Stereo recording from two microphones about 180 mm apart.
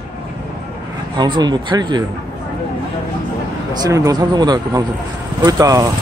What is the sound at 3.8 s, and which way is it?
Speech, 20° right (ahead or behind).